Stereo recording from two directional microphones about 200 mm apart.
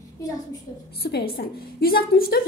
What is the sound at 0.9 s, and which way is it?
A woman's voice, 50° left (ahead or behind).